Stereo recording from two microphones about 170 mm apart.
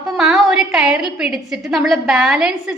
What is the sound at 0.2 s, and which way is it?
A woman's voice, 5° right (ahead or behind).